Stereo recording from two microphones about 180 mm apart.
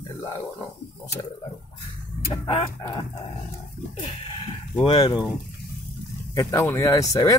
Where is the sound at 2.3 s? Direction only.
30° left (ahead or behind).